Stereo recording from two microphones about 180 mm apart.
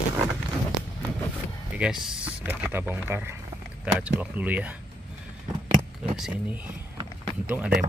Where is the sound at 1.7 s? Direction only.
5° right (ahead or behind).